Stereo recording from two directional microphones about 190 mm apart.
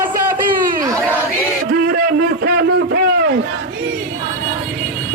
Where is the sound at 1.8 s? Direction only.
50° right (ahead or behind).